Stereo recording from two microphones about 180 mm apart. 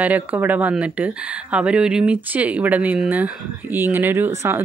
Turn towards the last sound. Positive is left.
turn(degrees=-15)  # may be behind; listen again after turning